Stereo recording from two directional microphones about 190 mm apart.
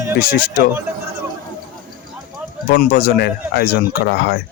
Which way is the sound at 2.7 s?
55° left (ahead or behind).